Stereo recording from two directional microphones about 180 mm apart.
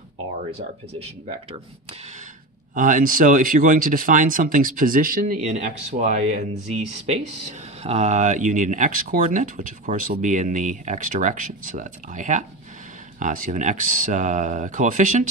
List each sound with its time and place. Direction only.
0.5 s speech: 35° right (ahead or behind)
2.7 s speech: 45° right (ahead or behind)